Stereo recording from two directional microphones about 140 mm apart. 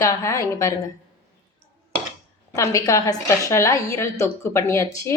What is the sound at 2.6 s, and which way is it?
A woman's voice, 25° left (ahead or behind).